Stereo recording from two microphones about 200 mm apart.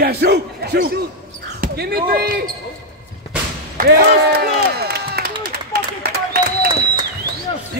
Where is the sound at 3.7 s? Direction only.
50° right (ahead or behind).